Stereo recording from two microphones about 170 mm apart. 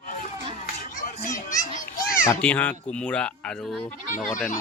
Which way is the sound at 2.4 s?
10° left (ahead or behind).